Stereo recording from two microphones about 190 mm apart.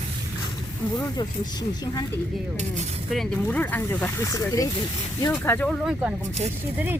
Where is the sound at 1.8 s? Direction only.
20° left (ahead or behind).